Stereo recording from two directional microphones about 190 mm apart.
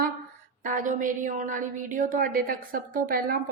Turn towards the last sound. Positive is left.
turn(degrees=-50)  # may be behind; listen again after turning